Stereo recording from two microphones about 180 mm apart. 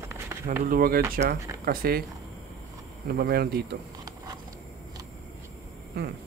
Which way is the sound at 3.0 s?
55° right (ahead or behind).